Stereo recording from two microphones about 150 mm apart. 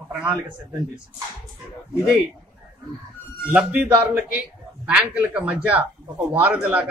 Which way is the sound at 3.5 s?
10° right (ahead or behind).